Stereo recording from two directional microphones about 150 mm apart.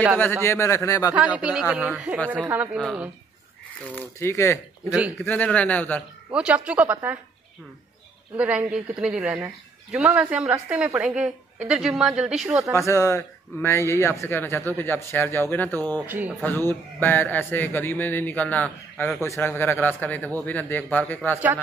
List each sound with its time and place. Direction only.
0.2 s a man's voice: 15° left (ahead or behind)
1.1 s speech: 10° right (ahead or behind)
2.1 s speech: 10° left (ahead or behind)
2.5 s a woman's voice: 10° right (ahead or behind)
3.9 s speech: 15° left (ahead or behind)
4.8 s a woman's voice: 5° right (ahead or behind)
5.2 s speech: 10° left (ahead or behind)
6.3 s speech: 5° right (ahead or behind)
8.4 s a woman's voice: 10° right (ahead or behind)
12.7 s speech: 20° left (ahead or behind)
16.1 s speech: 10° right (ahead or behind)
16.4 s speech: 15° left (ahead or behind)
19.2 s speech: 15° left (ahead or behind)